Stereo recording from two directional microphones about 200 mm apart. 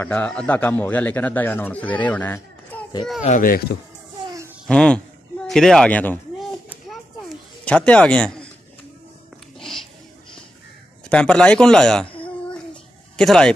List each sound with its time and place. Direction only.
0.0 s a man's voice: 5° left (ahead or behind)
3.3 s speech: 45° left (ahead or behind)
4.6 s a sound: 5° left (ahead or behind)
9.6 s a sound: centre (ahead or behind)
11.1 s speech: 5° left (ahead or behind)
13.1 s speech: 5° left (ahead or behind)